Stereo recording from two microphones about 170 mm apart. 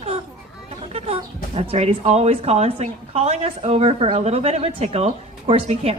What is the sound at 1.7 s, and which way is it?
A woman's voice, 35° right (ahead or behind).